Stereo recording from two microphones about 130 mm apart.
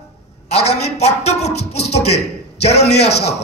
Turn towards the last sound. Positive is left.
turn(degrees=55)  # may be behind; listen again after turning